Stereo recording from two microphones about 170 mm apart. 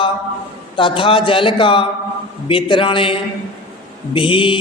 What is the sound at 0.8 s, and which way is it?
A woman's voice, 30° left (ahead or behind).